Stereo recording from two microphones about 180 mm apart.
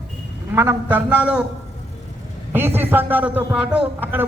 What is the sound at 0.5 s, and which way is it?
Speech, 10° right (ahead or behind).